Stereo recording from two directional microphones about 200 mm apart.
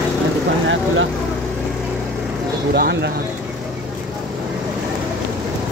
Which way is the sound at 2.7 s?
55° right (ahead or behind).